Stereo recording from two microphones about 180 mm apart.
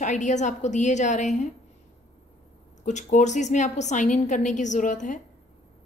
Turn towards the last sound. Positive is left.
turn(degrees=45)  # may be behind; listen again after turning